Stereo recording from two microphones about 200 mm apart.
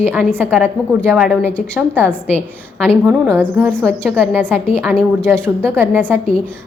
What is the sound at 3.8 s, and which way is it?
Speech, 10° right (ahead or behind).